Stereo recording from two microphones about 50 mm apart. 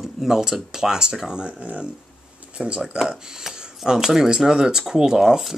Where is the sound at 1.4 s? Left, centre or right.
Right.